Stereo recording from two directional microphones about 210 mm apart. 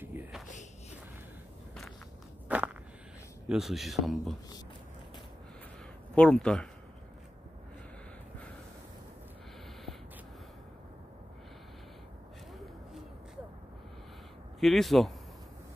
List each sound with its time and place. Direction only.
0.0 s a sound: 10° right (ahead or behind)
2.4 s walk: 5° right (ahead or behind)
3.4 s speech: centre (ahead or behind)
6.1 s speech: 5° left (ahead or behind)
14.6 s speech: centre (ahead or behind)